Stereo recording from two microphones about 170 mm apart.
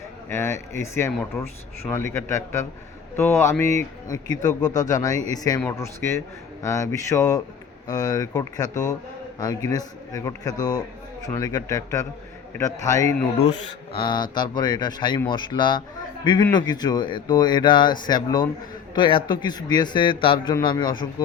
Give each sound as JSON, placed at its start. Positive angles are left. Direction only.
{"t": 0.3, "sound": "a man's voice", "side_deg": 15}